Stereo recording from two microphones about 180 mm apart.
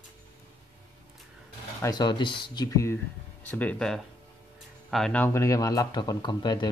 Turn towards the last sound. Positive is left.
turn(degrees=25)  # may be behind; listen again after turning